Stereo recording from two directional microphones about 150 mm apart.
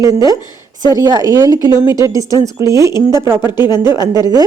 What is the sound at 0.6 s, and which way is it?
A woman's voice, 25° right (ahead or behind).